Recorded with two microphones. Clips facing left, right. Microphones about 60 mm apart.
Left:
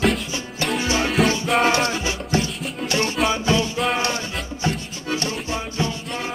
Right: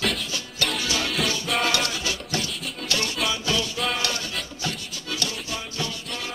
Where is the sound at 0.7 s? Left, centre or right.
Left.